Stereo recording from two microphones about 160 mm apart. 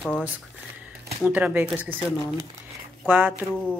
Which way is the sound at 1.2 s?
10° right (ahead or behind).